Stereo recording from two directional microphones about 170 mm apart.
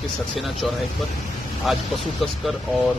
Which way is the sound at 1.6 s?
Centre (ahead or behind).